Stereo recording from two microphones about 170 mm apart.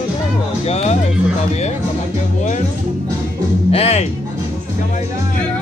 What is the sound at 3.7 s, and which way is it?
Music, 40° left (ahead or behind).